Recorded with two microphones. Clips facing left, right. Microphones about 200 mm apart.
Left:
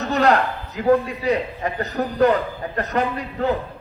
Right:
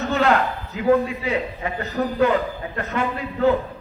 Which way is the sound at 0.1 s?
40° left (ahead or behind).